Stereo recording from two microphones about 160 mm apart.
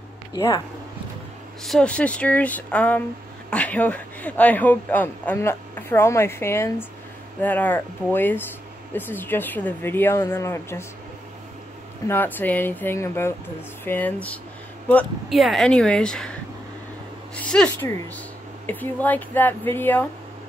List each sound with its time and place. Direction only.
0.3 s speech: 20° left (ahead or behind)
1.6 s a man's voice: 5° left (ahead or behind)
12.1 s a man's voice: 10° left (ahead or behind)
15.2 s speech: centre (ahead or behind)
17.4 s a man's voice: 5° left (ahead or behind)